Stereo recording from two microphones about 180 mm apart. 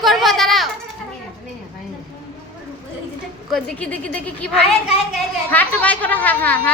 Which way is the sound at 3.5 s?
5° left (ahead or behind).